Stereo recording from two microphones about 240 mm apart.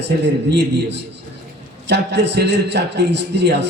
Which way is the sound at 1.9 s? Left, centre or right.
Right.